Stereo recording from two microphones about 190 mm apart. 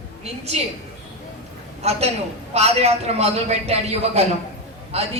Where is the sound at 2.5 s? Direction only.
35° right (ahead or behind).